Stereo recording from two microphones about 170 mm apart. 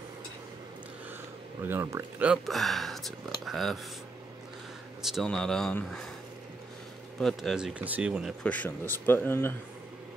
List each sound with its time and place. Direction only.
1.6 s speech: 15° right (ahead or behind)
5.0 s speech: centre (ahead or behind)
7.2 s speech: centre (ahead or behind)
8.5 s speech: 10° left (ahead or behind)